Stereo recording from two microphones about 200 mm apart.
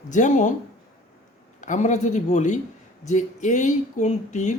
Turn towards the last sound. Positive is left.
turn(degrees=35)  # may be behind; listen again after turning